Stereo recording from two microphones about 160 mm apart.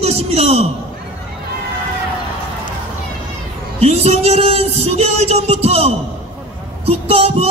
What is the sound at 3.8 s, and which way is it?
Speech, 40° right (ahead or behind).